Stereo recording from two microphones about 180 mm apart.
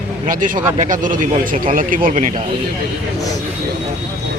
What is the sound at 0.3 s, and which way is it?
A man's voice, 50° right (ahead or behind).